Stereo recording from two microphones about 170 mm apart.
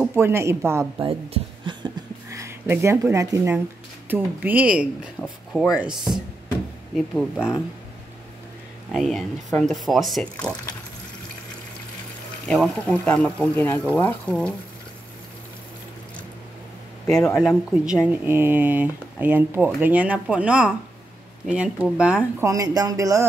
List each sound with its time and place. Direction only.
0.0 s speech: 15° right (ahead or behind)
0.9 s speech: 30° right (ahead or behind)
2.2 s speech: 15° right (ahead or behind)
7.2 s speech: 5° right (ahead or behind)
8.9 s speech: centre (ahead or behind)
12.4 s speech: 5° left (ahead or behind)
17.4 s speech: 5° right (ahead or behind)
22.4 s speech: 20° right (ahead or behind)